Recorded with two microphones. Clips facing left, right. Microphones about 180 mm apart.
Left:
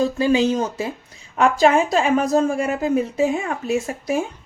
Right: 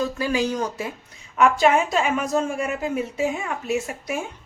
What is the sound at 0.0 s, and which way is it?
A woman's voice, 25° left (ahead or behind).